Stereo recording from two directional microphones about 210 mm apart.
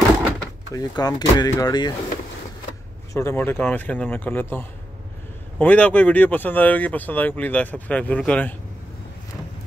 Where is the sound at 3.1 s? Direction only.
15° left (ahead or behind).